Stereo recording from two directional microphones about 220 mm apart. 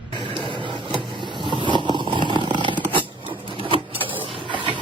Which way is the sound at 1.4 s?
20° right (ahead or behind).